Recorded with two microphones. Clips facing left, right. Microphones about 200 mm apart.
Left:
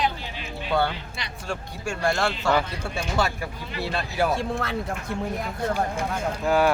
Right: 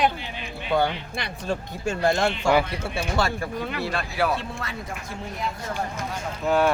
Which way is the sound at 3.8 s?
25° left (ahead or behind).